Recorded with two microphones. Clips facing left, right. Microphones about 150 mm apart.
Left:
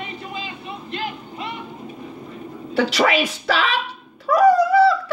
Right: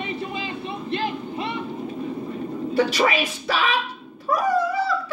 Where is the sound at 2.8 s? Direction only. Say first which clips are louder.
Left 2 dB; 90° left.